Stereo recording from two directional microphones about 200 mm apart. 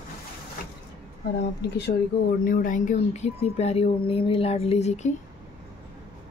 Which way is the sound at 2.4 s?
40° left (ahead or behind).